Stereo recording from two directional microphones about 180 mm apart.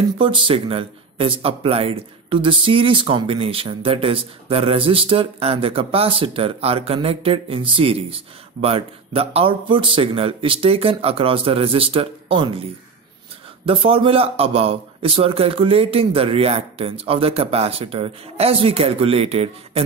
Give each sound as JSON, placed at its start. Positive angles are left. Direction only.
{"t": 0.2, "sound": "speech", "side_deg": -30}
{"t": 13.7, "sound": "speech", "side_deg": -30}